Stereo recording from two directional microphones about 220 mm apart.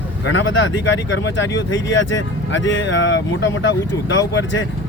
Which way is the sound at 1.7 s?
60° left (ahead or behind).